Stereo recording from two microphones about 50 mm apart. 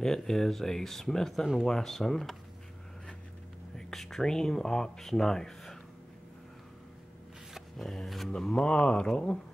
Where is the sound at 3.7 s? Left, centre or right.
Centre.